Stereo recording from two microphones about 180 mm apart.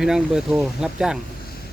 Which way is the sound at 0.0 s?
5° right (ahead or behind).